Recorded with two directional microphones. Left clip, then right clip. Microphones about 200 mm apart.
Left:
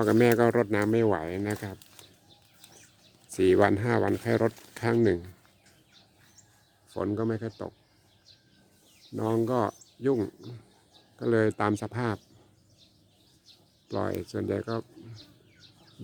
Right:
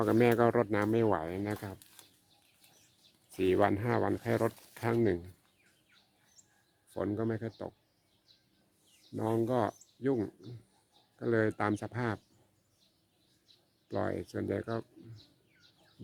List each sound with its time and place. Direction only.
0.0 s speech: 10° left (ahead or behind)
3.2 s speech: 15° left (ahead or behind)
6.9 s speech: centre (ahead or behind)
9.1 s speech: centre (ahead or behind)
13.8 s speech: centre (ahead or behind)